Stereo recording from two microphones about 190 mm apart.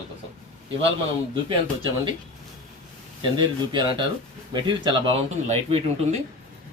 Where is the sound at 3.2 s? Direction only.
25° right (ahead or behind).